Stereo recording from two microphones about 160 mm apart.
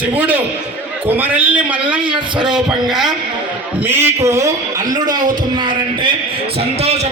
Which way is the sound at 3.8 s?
15° right (ahead or behind).